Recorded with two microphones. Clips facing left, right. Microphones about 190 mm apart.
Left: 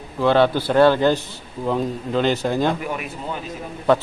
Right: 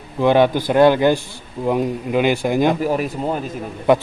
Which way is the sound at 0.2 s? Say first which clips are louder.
Right 2 dB; 15° right (ahead or behind).